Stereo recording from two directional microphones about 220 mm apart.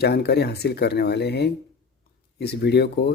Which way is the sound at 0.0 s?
45° left (ahead or behind).